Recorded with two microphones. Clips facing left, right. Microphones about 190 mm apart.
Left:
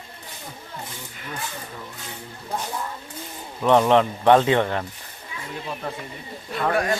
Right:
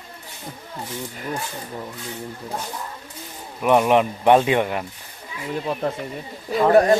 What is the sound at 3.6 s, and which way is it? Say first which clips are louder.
Speech: even; 10° right (ahead or behind).